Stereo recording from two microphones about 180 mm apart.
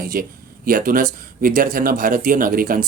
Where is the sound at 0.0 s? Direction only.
55° right (ahead or behind).